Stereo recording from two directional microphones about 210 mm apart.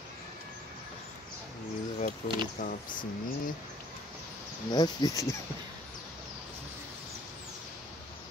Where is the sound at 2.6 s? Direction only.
35° left (ahead or behind).